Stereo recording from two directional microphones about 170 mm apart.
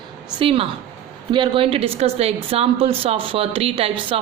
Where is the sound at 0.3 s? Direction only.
35° right (ahead or behind).